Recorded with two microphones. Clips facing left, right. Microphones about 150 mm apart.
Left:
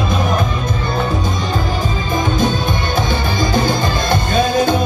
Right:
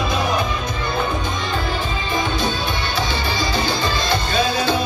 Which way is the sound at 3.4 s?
50° left (ahead or behind).